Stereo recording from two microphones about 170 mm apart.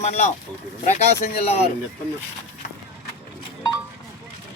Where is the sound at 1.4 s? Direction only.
40° left (ahead or behind).